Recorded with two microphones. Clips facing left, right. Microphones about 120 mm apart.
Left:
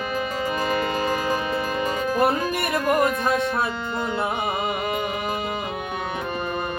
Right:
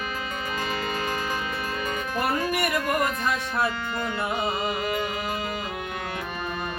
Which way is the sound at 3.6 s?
20° left (ahead or behind).